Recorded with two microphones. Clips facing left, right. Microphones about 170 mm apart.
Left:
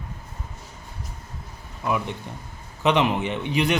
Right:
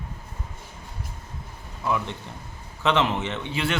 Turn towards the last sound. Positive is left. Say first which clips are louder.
# left 4 dB
turn(degrees=15)  # may be behind; listen again after turning